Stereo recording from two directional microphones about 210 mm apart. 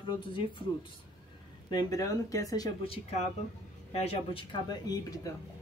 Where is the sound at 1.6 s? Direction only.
15° left (ahead or behind).